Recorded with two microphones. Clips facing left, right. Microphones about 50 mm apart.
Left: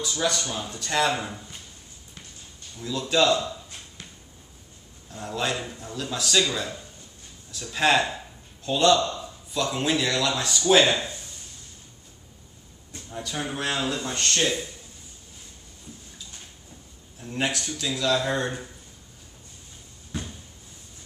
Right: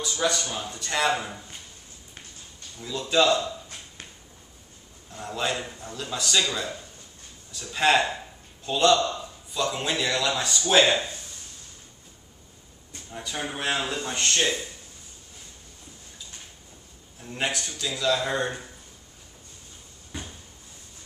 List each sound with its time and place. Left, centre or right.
0.0 s a man's voice: centre
2.8 s a man's voice: centre
5.1 s a man's voice: centre
12.9 s a man's voice: centre
17.3 s a man's voice: centre
20.1 s a sound: centre